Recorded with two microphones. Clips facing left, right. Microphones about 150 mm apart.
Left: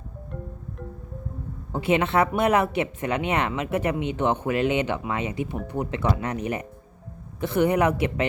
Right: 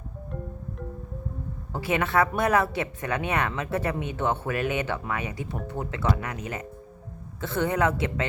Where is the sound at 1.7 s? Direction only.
20° left (ahead or behind).